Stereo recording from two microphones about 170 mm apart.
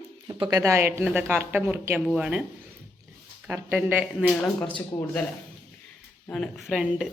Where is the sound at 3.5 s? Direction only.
10° right (ahead or behind).